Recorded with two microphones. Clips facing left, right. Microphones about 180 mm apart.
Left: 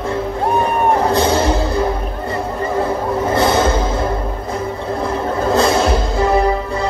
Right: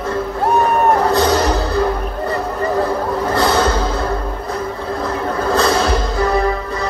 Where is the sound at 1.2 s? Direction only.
25° left (ahead or behind).